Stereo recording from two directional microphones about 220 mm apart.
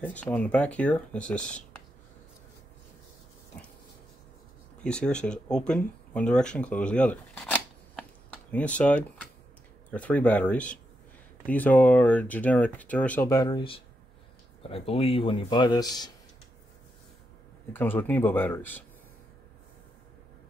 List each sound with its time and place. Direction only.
0.0 s speech: 5° left (ahead or behind)
3.5 s dog: 10° left (ahead or behind)
4.8 s speech: 5° left (ahead or behind)
17.7 s speech: 10° left (ahead or behind)